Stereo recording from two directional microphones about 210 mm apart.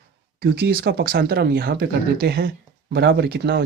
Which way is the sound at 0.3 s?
45° right (ahead or behind).